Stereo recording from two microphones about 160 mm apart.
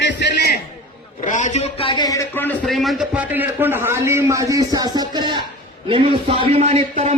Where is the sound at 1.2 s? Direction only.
50° left (ahead or behind); by 2.7 s 10° left (ahead or behind).